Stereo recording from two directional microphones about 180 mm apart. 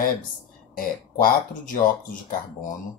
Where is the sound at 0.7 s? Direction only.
50° left (ahead or behind).